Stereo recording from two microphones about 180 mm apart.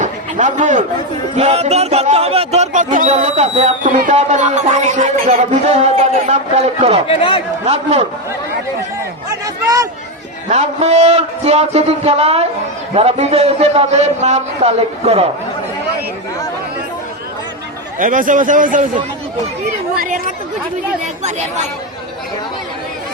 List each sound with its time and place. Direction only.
0.0 s a sound: 45° right (ahead or behind)
1.4 s speech: 35° right (ahead or behind)
7.2 s a man's voice: 30° left (ahead or behind)
7.6 s speech: 35° right (ahead or behind)
10.5 s speech: 40° right (ahead or behind)
18.0 s a man's voice: 45° right (ahead or behind)
20.0 s a man's voice: 45° right (ahead or behind)